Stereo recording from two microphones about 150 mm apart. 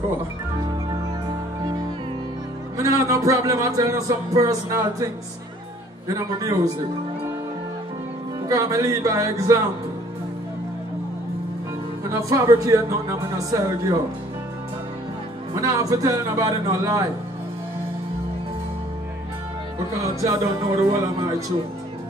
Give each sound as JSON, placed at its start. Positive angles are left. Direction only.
{"t": 2.8, "sound": "speech", "side_deg": -20}
{"t": 6.0, "sound": "speech", "side_deg": -25}
{"t": 8.5, "sound": "speech", "side_deg": -20}
{"t": 12.1, "sound": "speech", "side_deg": -20}
{"t": 15.5, "sound": "speech", "side_deg": -20}
{"t": 19.9, "sound": "speech", "side_deg": -20}